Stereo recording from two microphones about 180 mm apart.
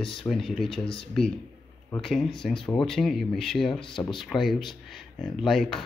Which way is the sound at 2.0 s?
Centre (ahead or behind).